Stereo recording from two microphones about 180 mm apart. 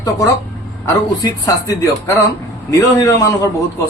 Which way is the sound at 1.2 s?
20° left (ahead or behind).